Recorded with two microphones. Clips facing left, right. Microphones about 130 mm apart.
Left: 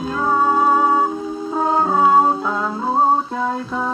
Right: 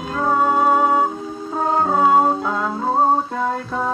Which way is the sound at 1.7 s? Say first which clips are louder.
Even; 10° left (ahead or behind).